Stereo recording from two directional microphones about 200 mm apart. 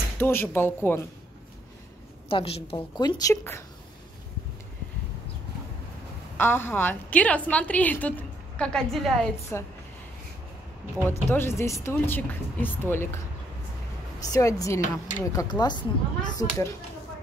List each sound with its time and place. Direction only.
0.2 s a woman's voice: 10° left (ahead or behind)
2.2 s a woman's voice: 25° left (ahead or behind)
6.3 s a woman's voice: 10° left (ahead or behind)
11.1 s a woman's voice: 10° left (ahead or behind)
14.2 s a woman's voice: 15° left (ahead or behind)